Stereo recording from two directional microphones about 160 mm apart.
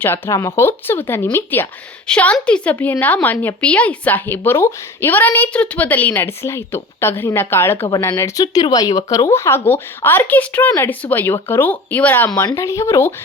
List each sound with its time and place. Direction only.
0.0 s a woman's voice: 15° left (ahead or behind)